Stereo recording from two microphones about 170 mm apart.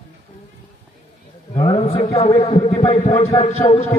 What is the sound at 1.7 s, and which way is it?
A man's voice, 35° left (ahead or behind).